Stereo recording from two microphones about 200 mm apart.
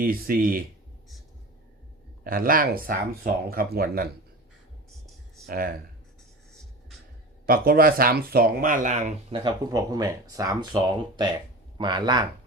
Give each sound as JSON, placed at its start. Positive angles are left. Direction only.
{"t": 0.0, "sound": "speech", "side_deg": -45}
{"t": 2.2, "sound": "speech", "side_deg": -45}
{"t": 5.5, "sound": "speech", "side_deg": -45}
{"t": 7.4, "sound": "speech", "side_deg": -50}